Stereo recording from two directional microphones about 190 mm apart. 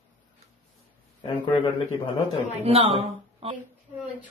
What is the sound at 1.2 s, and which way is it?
Speech, 25° left (ahead or behind).